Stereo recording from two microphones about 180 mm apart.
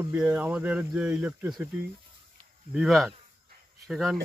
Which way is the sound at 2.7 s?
Centre (ahead or behind).